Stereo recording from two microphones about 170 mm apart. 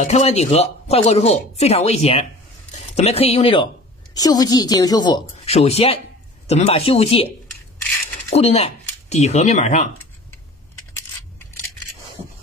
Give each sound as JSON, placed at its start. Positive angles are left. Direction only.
{"t": 0.0, "sound": "speech", "side_deg": 40}
{"t": 4.1, "sound": "a woman's voice", "side_deg": 20}
{"t": 5.5, "sound": "speech", "side_deg": 35}
{"t": 8.3, "sound": "speech", "side_deg": 40}